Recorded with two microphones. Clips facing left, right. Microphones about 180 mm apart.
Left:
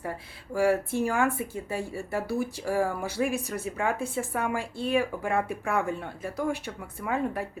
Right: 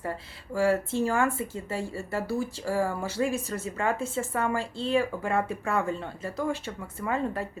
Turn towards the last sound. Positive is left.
turn(degrees=15)  # may be behind; listen again after turning